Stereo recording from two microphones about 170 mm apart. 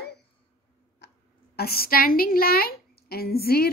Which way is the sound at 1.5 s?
65° left (ahead or behind).